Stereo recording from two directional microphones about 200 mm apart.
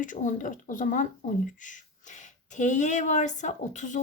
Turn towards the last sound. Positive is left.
turn(degrees=40)  # may be behind; listen again after turning